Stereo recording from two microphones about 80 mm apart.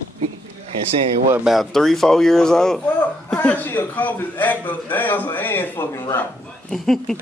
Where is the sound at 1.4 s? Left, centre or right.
Centre; by 6.3 s left.